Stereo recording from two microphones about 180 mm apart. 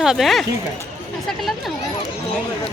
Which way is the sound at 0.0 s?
Centre (ahead or behind).